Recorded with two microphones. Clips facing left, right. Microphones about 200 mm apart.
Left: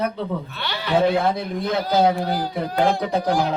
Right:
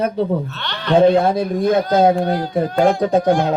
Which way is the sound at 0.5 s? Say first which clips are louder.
Right 2 dB; 5° left (ahead or behind).